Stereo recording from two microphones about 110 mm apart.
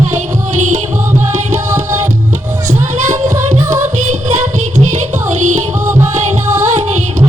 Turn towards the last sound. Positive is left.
turn(degrees=-90)